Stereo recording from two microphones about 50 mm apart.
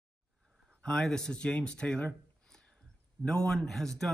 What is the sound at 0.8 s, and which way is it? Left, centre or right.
Speech, centre.